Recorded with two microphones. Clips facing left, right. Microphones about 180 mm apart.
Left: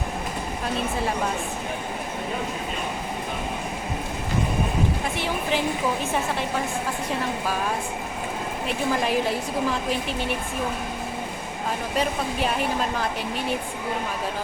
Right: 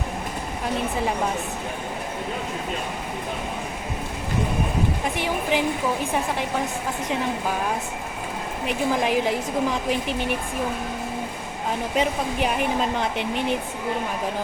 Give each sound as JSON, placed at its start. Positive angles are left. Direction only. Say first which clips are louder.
{"t": 5.1, "sound": "a woman's voice", "louder": "right 2 dB", "side_deg": -15}
{"t": 8.6, "sound": "a woman's voice", "louder": "right 2 dB", "side_deg": -15}
{"t": 11.9, "sound": "speech", "louder": "right 2 dB", "side_deg": -15}